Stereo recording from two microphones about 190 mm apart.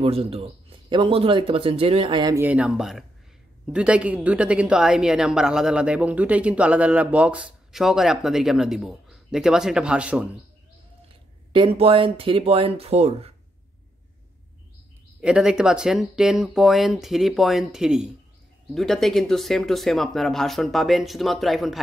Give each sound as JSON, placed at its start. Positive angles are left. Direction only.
{"t": 0.0, "sound": "speech", "side_deg": -30}
{"t": 2.3, "sound": "a woman's voice", "side_deg": -10}
{"t": 11.5, "sound": "speech", "side_deg": -30}
{"t": 15.1, "sound": "a woman's voice", "side_deg": -5}